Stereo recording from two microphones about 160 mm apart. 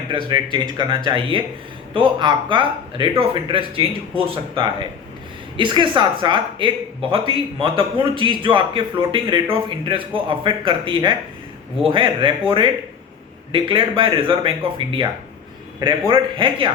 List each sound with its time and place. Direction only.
0.8 s speech: 30° right (ahead or behind)